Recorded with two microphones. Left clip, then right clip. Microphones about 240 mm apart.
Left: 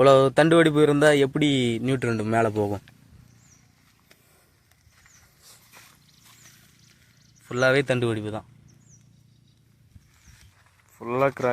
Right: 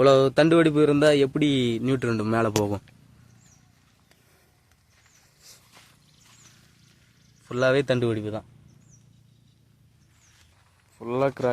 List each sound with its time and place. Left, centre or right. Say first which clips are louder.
0.0 s speech: left 1 dB; centre
5.5 s a sound: right 2 dB; centre
7.4 s speech: left 1 dB; centre
10.9 s speech: left 2 dB; centre